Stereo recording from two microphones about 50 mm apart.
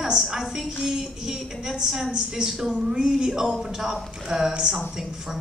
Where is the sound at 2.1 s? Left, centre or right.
Centre.